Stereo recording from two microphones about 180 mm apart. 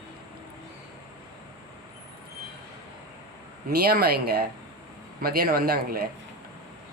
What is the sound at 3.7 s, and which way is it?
Speech, 60° right (ahead or behind).